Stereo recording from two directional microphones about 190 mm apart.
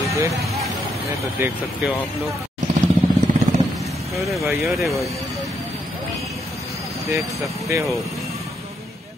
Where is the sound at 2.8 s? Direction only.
35° right (ahead or behind).